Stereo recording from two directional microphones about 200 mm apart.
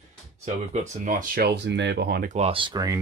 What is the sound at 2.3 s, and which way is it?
Speech, 30° right (ahead or behind).